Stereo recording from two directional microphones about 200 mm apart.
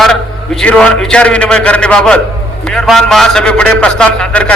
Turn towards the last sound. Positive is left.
turn(degrees=5)  # may be behind; listen again after turning